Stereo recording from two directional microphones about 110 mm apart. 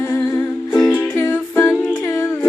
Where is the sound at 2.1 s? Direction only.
20° left (ahead or behind).